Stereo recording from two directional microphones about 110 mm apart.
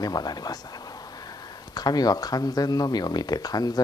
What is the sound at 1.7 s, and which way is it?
Speech, 40° left (ahead or behind).